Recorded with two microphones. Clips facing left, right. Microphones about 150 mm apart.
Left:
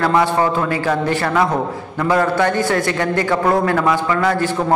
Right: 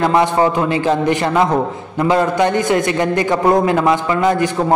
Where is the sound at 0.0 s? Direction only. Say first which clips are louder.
Right 2 dB; 20° right (ahead or behind).